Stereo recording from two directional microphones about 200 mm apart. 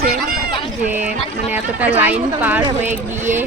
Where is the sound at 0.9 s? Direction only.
10° right (ahead or behind).